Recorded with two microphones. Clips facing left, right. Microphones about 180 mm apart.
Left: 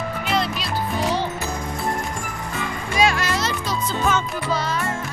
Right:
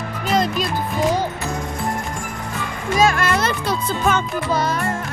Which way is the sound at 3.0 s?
50° right (ahead or behind).